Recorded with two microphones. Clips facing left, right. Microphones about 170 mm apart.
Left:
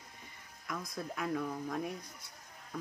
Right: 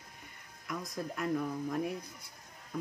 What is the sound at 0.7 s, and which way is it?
Speech, centre (ahead or behind).